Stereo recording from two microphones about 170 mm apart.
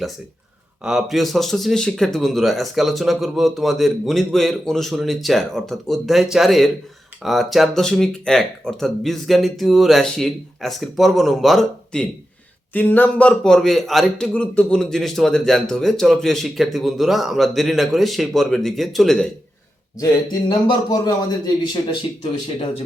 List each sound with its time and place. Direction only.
0.9 s a man's voice: centre (ahead or behind)
20.7 s a man's voice: 20° left (ahead or behind)